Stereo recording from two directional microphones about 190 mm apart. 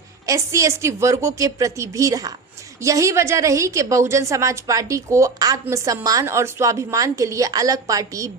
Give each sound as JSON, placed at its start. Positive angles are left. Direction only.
{"t": 0.3, "sound": "a woman's voice", "side_deg": -15}